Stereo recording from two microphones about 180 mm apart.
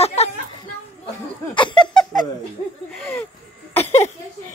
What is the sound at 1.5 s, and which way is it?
Speech, 25° left (ahead or behind).